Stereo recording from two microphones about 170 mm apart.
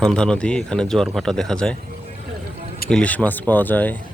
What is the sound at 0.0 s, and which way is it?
Speech, 5° left (ahead or behind).